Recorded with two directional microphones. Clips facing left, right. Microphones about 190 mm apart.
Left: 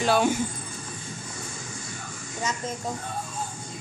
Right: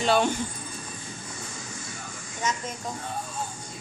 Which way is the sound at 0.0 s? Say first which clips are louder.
Left 1 dB; 5° left (ahead or behind).